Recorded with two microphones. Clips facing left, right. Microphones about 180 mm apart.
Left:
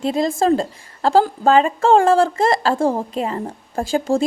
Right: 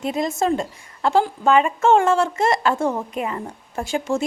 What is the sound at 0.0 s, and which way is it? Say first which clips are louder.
A woman's voice: left 4 dB; 30° left (ahead or behind).